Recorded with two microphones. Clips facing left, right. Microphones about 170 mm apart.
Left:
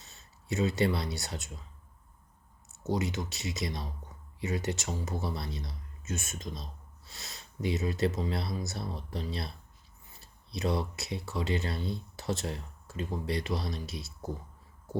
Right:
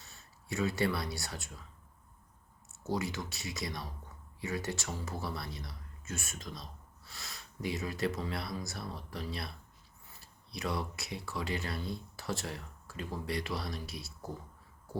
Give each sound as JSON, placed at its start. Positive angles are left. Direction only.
{"t": 0.0, "sound": "speech", "side_deg": 20}
{"t": 2.8, "sound": "speech", "side_deg": 20}